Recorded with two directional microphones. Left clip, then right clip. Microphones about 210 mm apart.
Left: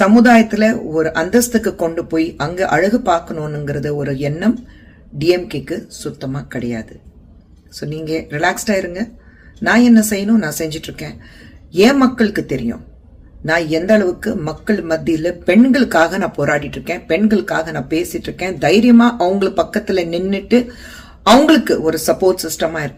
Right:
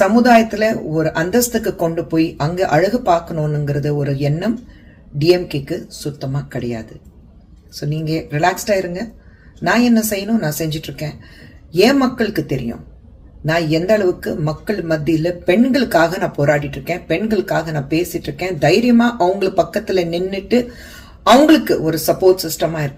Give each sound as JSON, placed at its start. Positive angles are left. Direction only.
{"t": 0.2, "sound": "speech", "side_deg": 15}